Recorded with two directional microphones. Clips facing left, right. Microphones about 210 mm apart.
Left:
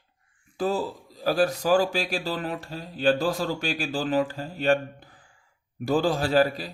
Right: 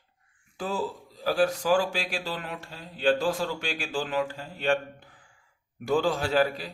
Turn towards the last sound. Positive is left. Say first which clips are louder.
# left 3 dB
turn(degrees=35)  # may be behind; listen again after turning